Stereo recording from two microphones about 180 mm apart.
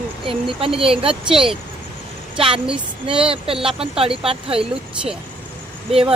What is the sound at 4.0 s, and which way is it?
Speech, 30° right (ahead or behind).